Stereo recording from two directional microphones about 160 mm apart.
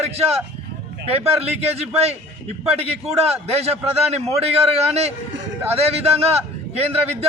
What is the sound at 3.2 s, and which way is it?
Speech, 40° right (ahead or behind).